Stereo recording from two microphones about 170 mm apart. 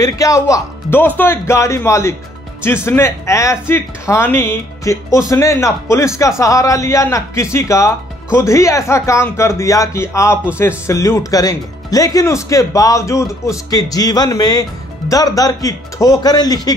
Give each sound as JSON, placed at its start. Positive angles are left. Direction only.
{"t": 0.0, "sound": "speech", "side_deg": 20}